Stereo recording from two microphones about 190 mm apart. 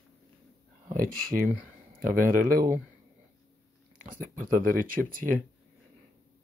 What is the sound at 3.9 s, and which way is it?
Speech, 45° right (ahead or behind).